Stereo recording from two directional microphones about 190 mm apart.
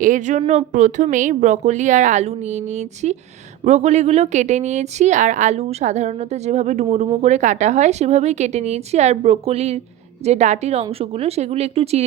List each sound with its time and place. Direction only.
0.0 s speech: 40° right (ahead or behind)